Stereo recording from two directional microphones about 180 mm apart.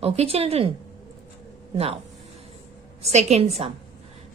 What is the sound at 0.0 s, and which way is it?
Speech, 35° right (ahead or behind).